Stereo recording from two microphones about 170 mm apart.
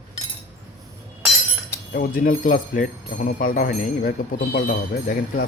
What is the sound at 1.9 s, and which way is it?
Speech, 60° left (ahead or behind).